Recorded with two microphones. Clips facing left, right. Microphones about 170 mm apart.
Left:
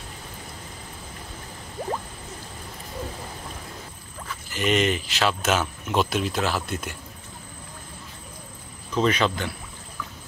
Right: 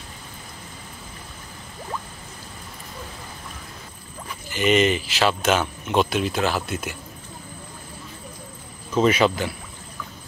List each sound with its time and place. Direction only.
4.5 s speech: centre (ahead or behind)
8.9 s speech: 5° right (ahead or behind)